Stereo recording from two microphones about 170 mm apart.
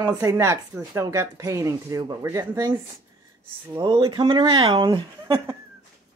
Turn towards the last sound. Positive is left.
turn(degrees=-25)  # may be behind; listen again after turning